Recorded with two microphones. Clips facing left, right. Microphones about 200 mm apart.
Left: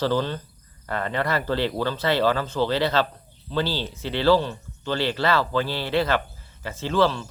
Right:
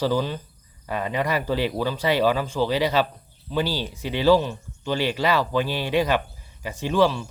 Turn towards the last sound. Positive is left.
turn(degrees=-15)  # may be behind; listen again after turning